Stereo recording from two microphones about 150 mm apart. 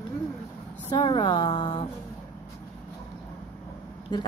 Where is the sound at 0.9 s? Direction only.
30° left (ahead or behind).